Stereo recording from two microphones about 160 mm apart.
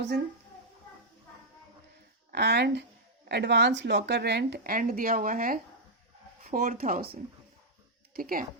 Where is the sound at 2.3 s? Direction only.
90° right; by 7.1 s 65° right (ahead or behind).